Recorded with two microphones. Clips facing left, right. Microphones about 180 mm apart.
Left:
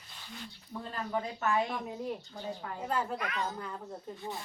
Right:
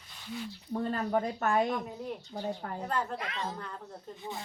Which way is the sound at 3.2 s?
25° right (ahead or behind).